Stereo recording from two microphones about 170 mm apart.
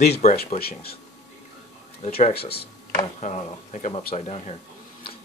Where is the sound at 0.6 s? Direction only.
65° left (ahead or behind).